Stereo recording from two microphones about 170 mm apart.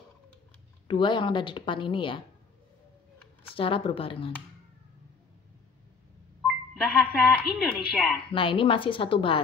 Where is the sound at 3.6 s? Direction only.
30° left (ahead or behind).